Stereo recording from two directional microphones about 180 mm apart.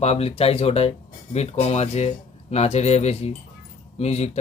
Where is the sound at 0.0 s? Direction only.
35° left (ahead or behind).